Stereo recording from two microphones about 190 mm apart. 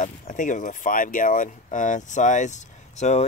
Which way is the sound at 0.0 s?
40° left (ahead or behind).